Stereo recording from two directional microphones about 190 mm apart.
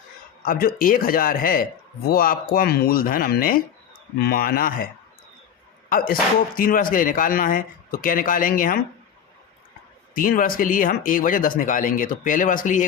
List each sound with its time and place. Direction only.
0.4 s speech: 50° left (ahead or behind)
6.6 s speech: 50° left (ahead or behind)
10.2 s speech: 50° left (ahead or behind)